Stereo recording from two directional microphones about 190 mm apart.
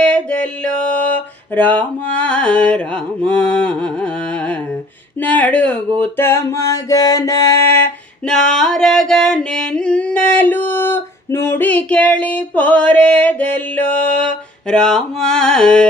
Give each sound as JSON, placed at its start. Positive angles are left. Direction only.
{"t": 0.0, "sound": "a sound", "side_deg": 5}
{"t": 5.2, "sound": "music", "side_deg": 5}
{"t": 8.3, "sound": "singing", "side_deg": 5}